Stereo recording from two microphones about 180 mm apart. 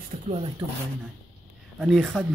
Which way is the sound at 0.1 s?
45° right (ahead or behind).